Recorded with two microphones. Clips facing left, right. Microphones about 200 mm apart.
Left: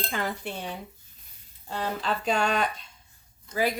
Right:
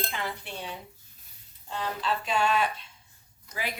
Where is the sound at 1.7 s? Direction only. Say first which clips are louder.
Left 1 dB; 50° left (ahead or behind).